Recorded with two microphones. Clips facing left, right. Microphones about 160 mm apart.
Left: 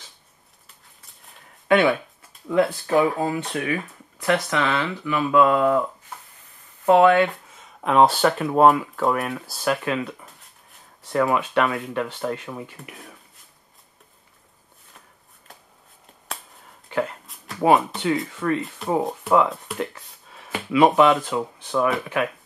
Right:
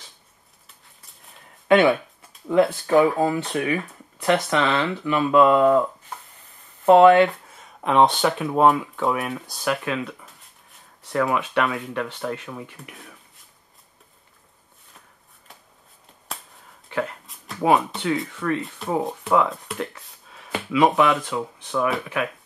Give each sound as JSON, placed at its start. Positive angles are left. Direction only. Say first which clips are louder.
{"t": 1.7, "sound": "speech", "louder": "right 2 dB", "side_deg": -20}
{"t": 6.9, "sound": "speech", "louder": "right 3 dB", "side_deg": -25}
{"t": 7.8, "sound": "speech", "louder": "left 1 dB", "side_deg": 5}
{"t": 16.3, "sound": "finger snapping", "louder": "left 1 dB", "side_deg": 0}
{"t": 16.9, "sound": "a sound", "louder": "left 2 dB", "side_deg": 0}
{"t": 17.6, "sound": "speech", "louder": "left 1 dB", "side_deg": 0}
{"t": 21.0, "sound": "speech", "louder": "left 3 dB", "side_deg": 20}